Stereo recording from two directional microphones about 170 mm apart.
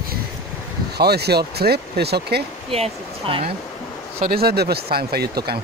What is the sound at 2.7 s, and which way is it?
Speech, 35° right (ahead or behind).